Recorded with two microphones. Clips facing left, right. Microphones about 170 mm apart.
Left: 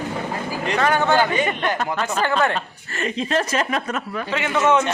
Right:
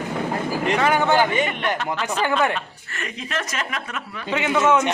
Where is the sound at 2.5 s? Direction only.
30° left (ahead or behind).